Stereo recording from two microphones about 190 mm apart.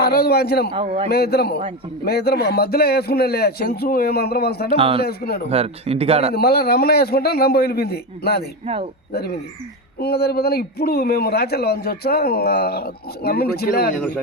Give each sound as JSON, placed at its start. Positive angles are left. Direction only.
{"t": 0.0, "sound": "a man's voice", "side_deg": 55}
{"t": 0.7, "sound": "a man's voice", "side_deg": -30}
{"t": 1.1, "sound": "a man's voice", "side_deg": 55}
{"t": 4.8, "sound": "a man's voice", "side_deg": -30}
{"t": 5.0, "sound": "a man's voice", "side_deg": 55}
{"t": 5.5, "sound": "speech", "side_deg": -30}
{"t": 6.3, "sound": "a man's voice", "side_deg": 55}